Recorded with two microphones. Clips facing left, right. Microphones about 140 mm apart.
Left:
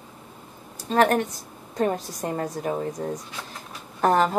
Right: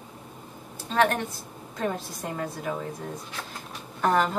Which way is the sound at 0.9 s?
45° left (ahead or behind).